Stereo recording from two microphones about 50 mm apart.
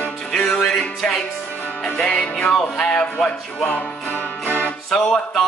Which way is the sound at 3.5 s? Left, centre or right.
Left.